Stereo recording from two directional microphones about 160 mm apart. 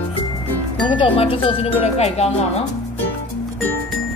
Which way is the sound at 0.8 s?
35° left (ahead or behind).